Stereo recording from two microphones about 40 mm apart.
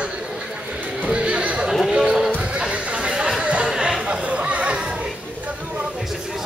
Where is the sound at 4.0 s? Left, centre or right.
Right.